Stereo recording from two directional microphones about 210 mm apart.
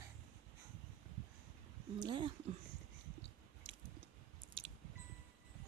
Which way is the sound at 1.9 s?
20° right (ahead or behind).